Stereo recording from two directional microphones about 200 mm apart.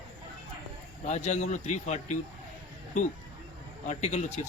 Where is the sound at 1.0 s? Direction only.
35° left (ahead or behind).